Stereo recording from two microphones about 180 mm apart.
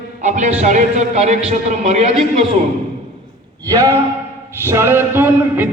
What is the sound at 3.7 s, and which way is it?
Speech, 20° right (ahead or behind).